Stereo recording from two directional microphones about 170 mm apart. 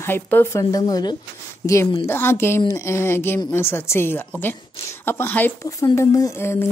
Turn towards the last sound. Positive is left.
turn(degrees=15)  # may be behind; listen again after turning